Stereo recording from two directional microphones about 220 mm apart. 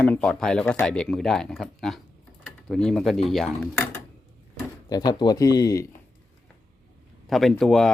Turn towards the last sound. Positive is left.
turn(degrees=0)  # may be behind; listen again after turning